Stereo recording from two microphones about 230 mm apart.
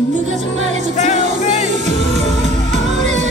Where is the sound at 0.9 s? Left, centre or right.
Left.